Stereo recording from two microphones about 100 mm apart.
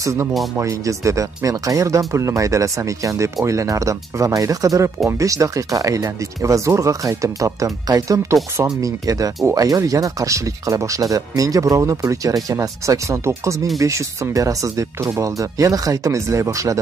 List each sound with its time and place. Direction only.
0.6 s speech: 30° right (ahead or behind)